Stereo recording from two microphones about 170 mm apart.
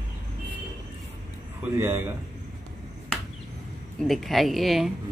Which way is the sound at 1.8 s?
15° right (ahead or behind).